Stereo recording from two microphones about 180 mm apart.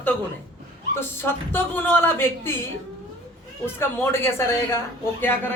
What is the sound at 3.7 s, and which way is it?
Speech, 15° left (ahead or behind).